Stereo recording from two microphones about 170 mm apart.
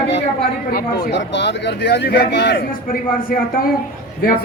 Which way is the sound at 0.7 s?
75° left (ahead or behind).